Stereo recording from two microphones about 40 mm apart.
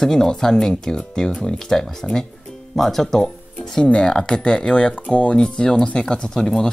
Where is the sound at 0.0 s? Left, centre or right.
Centre; by 5.4 s left.